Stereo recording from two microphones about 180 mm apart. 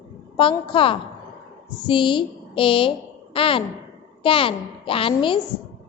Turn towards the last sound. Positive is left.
turn(degrees=30)  # may be behind; listen again after turning